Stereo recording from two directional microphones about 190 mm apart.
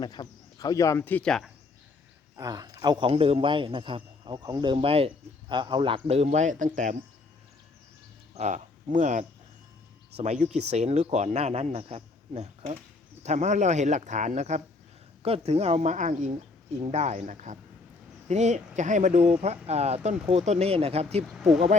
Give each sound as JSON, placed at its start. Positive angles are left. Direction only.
{"t": 0.0, "sound": "speech", "side_deg": 20}
{"t": 2.3, "sound": "a man's voice", "side_deg": -20}
{"t": 8.4, "sound": "a man's voice", "side_deg": -40}
{"t": 21.2, "sound": "speech", "side_deg": -5}